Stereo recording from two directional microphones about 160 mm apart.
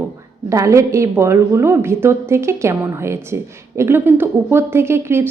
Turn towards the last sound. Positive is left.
turn(degrees=-15)  # may be behind; listen again after turning